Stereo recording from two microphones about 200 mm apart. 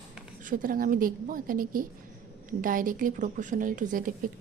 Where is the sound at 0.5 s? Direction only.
45° right (ahead or behind).